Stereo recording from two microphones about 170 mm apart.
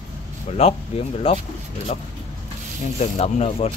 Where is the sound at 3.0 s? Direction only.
40° left (ahead or behind).